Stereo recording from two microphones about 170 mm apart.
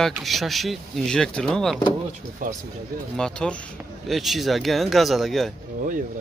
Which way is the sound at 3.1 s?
5° left (ahead or behind).